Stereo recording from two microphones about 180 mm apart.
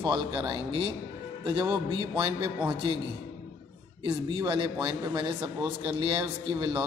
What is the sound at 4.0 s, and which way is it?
Speech, 25° right (ahead or behind).